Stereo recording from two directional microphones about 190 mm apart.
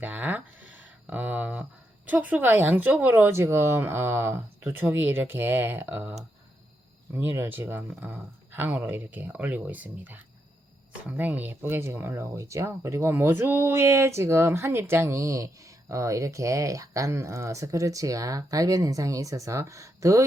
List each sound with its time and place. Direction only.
0.0 s a sound: 10° right (ahead or behind)
2.0 s speech: 10° right (ahead or behind)
11.2 s speech: 10° right (ahead or behind)